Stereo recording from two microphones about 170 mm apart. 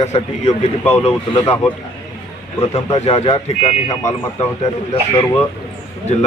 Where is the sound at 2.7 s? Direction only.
40° left (ahead or behind).